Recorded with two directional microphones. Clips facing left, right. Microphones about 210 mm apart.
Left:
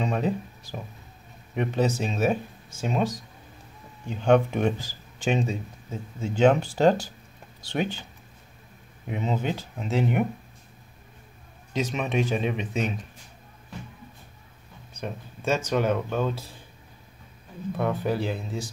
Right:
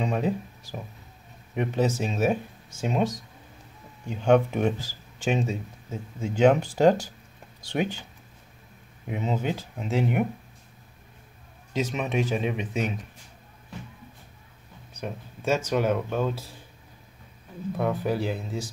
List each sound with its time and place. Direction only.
0.0 s speech: 10° right (ahead or behind)
2.8 s speech: 20° right (ahead or behind)
4.1 s speech: 5° right (ahead or behind)
9.1 s speech: 5° right (ahead or behind)
11.7 s speech: 5° right (ahead or behind)
15.0 s speech: 5° right (ahead or behind)
17.7 s speech: 10° right (ahead or behind)